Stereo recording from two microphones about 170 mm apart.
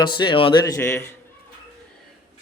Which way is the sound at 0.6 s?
15° left (ahead or behind).